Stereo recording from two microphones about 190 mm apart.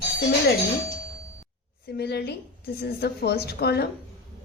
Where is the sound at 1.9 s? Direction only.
60° left (ahead or behind).